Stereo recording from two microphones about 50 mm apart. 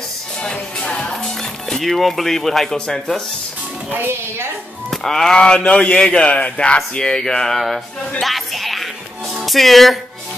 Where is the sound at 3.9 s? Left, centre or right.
Right.